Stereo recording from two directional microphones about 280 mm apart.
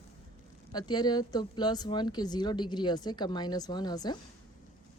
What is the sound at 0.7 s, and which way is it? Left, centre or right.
Speech, centre.